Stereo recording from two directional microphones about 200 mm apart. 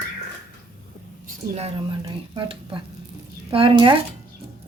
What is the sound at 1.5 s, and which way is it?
Speech, 30° right (ahead or behind).